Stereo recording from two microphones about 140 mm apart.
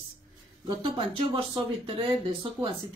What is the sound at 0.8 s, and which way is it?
Speech, 35° right (ahead or behind).